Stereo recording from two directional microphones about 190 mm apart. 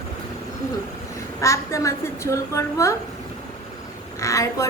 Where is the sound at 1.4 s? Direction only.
15° left (ahead or behind).